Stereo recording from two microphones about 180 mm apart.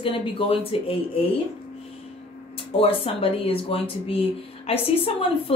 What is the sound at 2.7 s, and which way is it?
A woman's voice, 30° left (ahead or behind).